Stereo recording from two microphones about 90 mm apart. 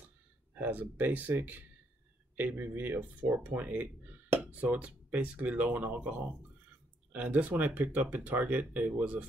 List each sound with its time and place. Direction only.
0.6 s speech: 20° right (ahead or behind)